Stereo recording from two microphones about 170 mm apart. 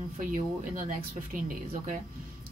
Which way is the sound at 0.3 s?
50° right (ahead or behind).